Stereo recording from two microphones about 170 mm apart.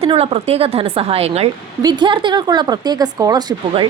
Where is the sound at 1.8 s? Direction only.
25° right (ahead or behind).